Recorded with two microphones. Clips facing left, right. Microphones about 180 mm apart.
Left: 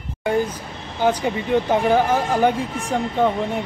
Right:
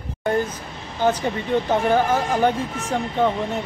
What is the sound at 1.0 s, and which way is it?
Speech, 10° left (ahead or behind).